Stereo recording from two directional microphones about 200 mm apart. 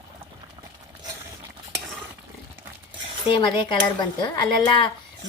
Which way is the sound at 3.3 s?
25° left (ahead or behind).